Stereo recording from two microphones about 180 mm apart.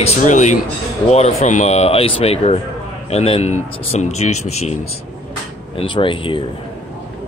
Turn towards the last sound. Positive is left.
turn(degrees=25)  # may be behind; listen again after turning